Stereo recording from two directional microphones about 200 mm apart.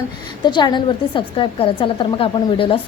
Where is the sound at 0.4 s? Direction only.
20° left (ahead or behind).